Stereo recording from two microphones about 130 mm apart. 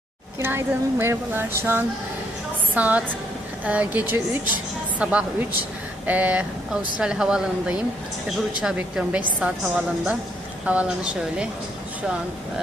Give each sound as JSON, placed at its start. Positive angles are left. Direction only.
{"t": 0.3, "sound": "a woman's voice", "side_deg": -20}